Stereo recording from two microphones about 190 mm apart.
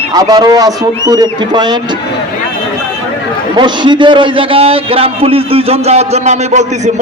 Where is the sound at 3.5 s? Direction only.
25° right (ahead or behind).